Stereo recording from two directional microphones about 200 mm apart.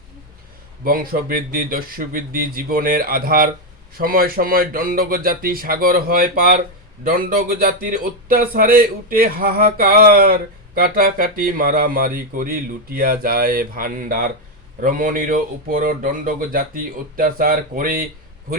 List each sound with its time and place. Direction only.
0.9 s speech: 45° right (ahead or behind)